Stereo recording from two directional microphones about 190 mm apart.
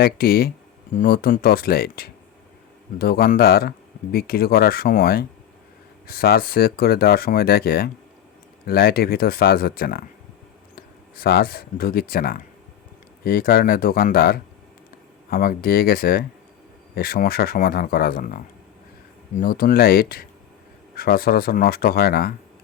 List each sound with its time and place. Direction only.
0.0 s speech: 55° left (ahead or behind)